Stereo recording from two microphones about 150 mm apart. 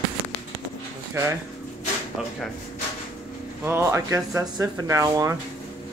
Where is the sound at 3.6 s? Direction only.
15° right (ahead or behind).